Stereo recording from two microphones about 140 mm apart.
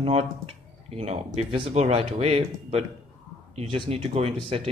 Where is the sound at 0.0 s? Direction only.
50° right (ahead or behind).